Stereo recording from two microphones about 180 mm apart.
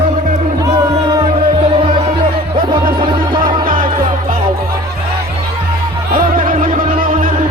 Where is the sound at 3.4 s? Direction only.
50° right (ahead or behind).